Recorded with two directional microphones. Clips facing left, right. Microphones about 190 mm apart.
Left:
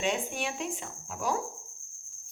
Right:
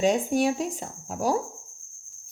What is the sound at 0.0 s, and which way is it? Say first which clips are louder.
Speech: right 9 dB; 40° right (ahead or behind).